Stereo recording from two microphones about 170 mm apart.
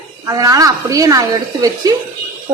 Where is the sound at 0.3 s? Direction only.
20° right (ahead or behind).